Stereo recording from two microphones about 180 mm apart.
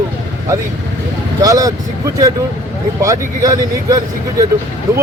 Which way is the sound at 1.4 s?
20° right (ahead or behind).